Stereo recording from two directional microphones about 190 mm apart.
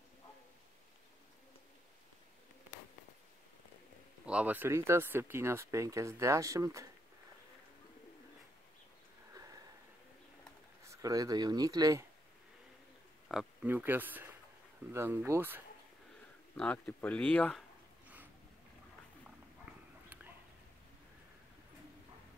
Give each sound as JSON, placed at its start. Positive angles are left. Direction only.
{"t": 4.3, "sound": "speech", "side_deg": -5}
{"t": 10.8, "sound": "speech", "side_deg": -15}
{"t": 13.3, "sound": "speech", "side_deg": -5}
{"t": 16.5, "sound": "speech", "side_deg": 5}
{"t": 18.0, "sound": "a sound", "side_deg": -10}